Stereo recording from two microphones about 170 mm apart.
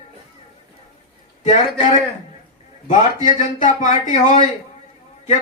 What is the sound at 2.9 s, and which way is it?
Speech, 50° left (ahead or behind).